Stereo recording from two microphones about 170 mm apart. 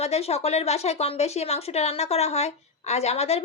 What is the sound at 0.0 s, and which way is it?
Speech, 35° left (ahead or behind).